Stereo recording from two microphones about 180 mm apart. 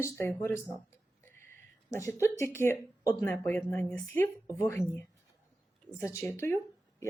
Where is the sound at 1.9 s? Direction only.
15° left (ahead or behind).